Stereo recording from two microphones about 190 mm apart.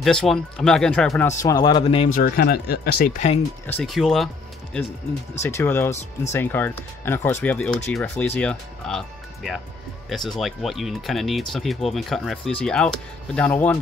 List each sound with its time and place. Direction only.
0.0 s speech: centre (ahead or behind)
1.2 s speech: 20° left (ahead or behind)
2.1 s speech: 50° left (ahead or behind)
3.6 s speech: 5° left (ahead or behind)
5.4 s speech: 15° left (ahead or behind)